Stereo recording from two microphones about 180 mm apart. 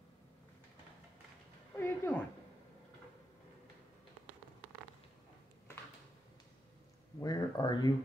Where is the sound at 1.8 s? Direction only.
10° left (ahead or behind).